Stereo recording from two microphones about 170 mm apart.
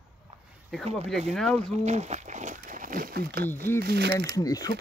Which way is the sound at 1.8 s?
40° right (ahead or behind).